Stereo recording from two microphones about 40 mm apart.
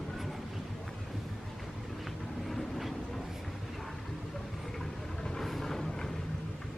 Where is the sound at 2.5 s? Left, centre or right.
Centre.